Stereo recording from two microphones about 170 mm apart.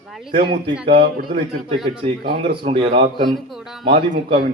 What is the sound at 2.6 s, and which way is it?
Speech, 35° right (ahead or behind).